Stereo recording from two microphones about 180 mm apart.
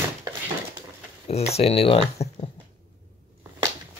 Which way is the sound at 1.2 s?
35° left (ahead or behind).